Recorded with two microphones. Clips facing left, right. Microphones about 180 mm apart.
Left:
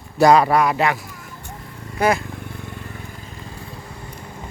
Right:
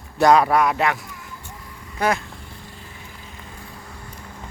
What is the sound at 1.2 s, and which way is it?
Vehicle, 40° left (ahead or behind).